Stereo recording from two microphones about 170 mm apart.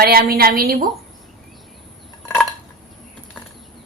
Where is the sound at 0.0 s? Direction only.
60° right (ahead or behind).